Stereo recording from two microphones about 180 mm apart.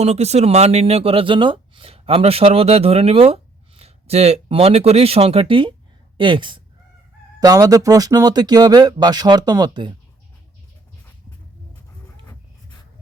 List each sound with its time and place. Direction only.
0.0 s speech: 35° right (ahead or behind)